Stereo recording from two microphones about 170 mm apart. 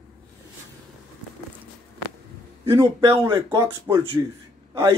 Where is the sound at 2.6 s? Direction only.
20° right (ahead or behind).